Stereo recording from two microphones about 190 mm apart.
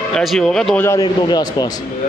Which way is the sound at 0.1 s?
Centre (ahead or behind).